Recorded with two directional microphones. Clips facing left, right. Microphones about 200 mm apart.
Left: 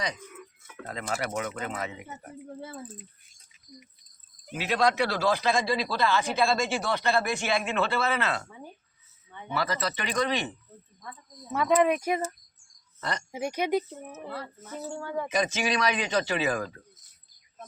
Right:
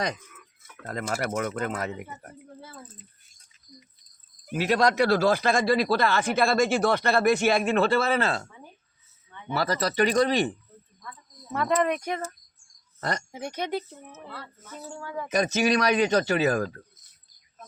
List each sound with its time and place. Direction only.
0.9 s speech: 45° right (ahead or behind)
4.5 s speech: 45° right (ahead or behind)
9.6 s speech: 35° right (ahead or behind)
11.5 s speech: 5° left (ahead or behind)
13.0 s speech: 45° right (ahead or behind)
13.3 s speech: 10° left (ahead or behind)
15.3 s speech: 45° right (ahead or behind)